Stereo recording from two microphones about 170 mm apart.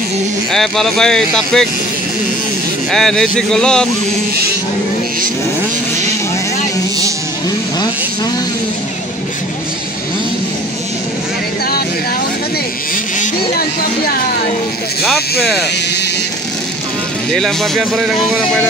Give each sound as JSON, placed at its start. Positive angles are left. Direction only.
{"t": 0.5, "sound": "speech", "side_deg": 0}
{"t": 2.9, "sound": "speech", "side_deg": 5}
{"t": 13.2, "sound": "music", "side_deg": 60}
{"t": 15.0, "sound": "speech", "side_deg": 5}
{"t": 17.3, "sound": "speech", "side_deg": 0}